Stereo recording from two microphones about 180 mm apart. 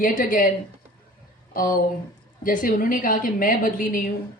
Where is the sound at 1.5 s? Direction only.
50° left (ahead or behind).